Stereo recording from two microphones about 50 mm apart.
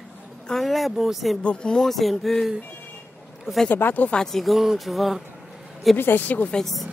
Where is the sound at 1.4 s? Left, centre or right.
Centre.